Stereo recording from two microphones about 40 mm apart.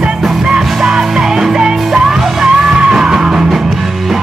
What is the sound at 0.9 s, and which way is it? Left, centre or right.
Music, centre.